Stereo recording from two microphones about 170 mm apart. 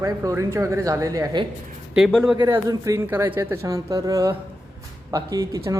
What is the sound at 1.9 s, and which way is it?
Speech, centre (ahead or behind).